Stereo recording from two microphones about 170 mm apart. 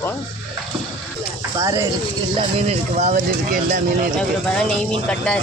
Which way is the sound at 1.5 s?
20° right (ahead or behind).